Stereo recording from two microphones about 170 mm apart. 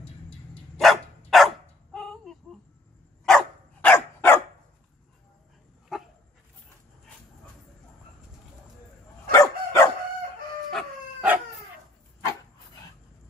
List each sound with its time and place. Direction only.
0.7 s dog: centre (ahead or behind)
5.9 s dog: 5° right (ahead or behind)
9.3 s dog: 20° left (ahead or behind)
11.1 s dog: 10° right (ahead or behind)